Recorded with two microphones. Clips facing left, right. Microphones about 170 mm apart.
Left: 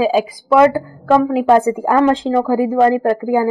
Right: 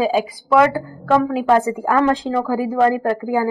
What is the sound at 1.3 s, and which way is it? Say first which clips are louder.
A woman's voice: left 4 dB; 25° left (ahead or behind).